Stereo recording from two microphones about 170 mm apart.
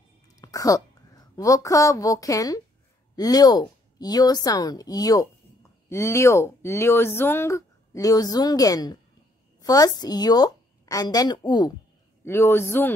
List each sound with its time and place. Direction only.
0.4 s a woman's voice: 20° left (ahead or behind)
12.3 s a man's voice: 15° left (ahead or behind)